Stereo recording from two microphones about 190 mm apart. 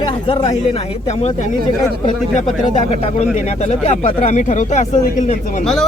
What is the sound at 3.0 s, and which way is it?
Speech, 35° left (ahead or behind).